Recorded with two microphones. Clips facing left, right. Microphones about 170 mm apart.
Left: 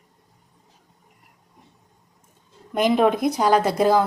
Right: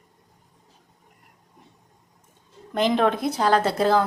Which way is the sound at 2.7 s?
10° left (ahead or behind).